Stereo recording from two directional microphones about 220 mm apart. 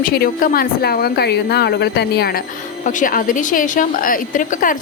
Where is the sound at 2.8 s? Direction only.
40° left (ahead or behind).